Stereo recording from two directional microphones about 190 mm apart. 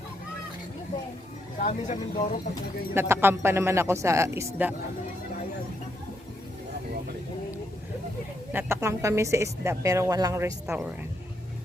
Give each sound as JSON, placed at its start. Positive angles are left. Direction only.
{"t": 1.5, "sound": "speech", "side_deg": 40}
{"t": 2.9, "sound": "a woman's voice", "side_deg": -10}
{"t": 8.5, "sound": "a woman's voice", "side_deg": -15}